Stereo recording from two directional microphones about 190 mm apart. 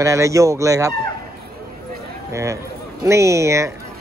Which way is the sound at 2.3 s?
15° right (ahead or behind).